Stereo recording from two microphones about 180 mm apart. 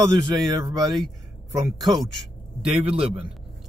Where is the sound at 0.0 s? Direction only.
20° right (ahead or behind).